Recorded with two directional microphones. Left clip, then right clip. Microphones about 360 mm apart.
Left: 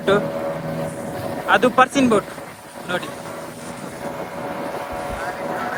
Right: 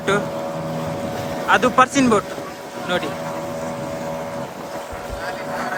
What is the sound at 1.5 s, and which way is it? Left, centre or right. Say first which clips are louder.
Speech: even; centre.